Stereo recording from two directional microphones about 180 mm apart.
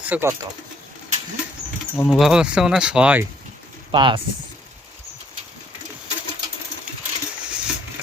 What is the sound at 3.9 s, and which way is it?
Speech, 25° right (ahead or behind).